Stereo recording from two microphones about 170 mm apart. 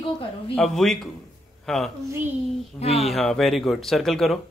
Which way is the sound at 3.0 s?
Centre (ahead or behind).